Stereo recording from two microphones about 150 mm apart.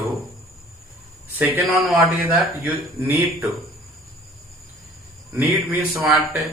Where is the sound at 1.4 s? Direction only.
10° right (ahead or behind).